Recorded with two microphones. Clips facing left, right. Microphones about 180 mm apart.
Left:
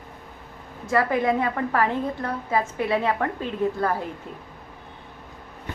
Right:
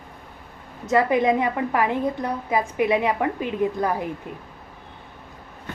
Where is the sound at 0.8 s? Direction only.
20° right (ahead or behind).